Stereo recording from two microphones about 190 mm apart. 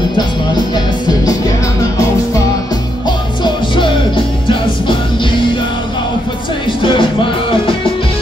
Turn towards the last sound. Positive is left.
turn(degrees=25)  # may be behind; listen again after turning